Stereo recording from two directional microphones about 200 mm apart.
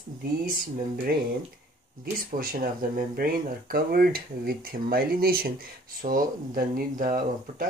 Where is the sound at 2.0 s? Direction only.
45° right (ahead or behind).